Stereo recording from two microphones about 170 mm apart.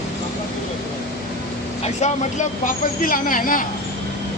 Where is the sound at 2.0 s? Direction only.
45° left (ahead or behind).